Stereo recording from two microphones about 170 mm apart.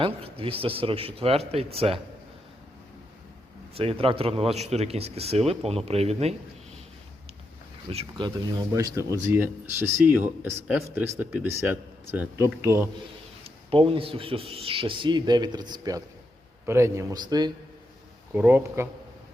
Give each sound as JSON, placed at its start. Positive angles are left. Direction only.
{"t": 0.0, "sound": "speech", "side_deg": -35}
{"t": 3.8, "sound": "speech", "side_deg": -35}
{"t": 7.9, "sound": "speech", "side_deg": -30}
{"t": 8.7, "sound": "speech", "side_deg": -20}
{"t": 13.4, "sound": "speech", "side_deg": -35}
{"t": 18.3, "sound": "speech", "side_deg": -10}